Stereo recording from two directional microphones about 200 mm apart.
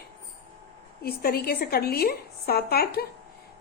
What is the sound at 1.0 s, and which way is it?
A woman's voice, 50° left (ahead or behind).